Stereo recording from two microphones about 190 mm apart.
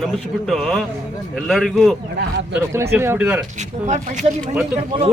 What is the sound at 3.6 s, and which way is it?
Speech, 40° right (ahead or behind).